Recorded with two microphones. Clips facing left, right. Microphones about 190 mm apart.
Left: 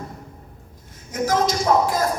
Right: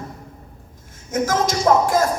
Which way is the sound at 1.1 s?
45° right (ahead or behind).